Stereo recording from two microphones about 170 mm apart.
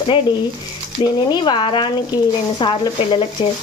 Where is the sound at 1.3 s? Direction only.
25° left (ahead or behind).